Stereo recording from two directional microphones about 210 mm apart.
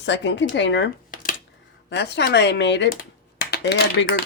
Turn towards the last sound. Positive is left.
turn(degrees=50)  # may be behind; listen again after turning